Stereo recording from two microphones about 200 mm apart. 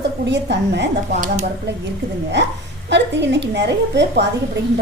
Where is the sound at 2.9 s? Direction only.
60° right (ahead or behind).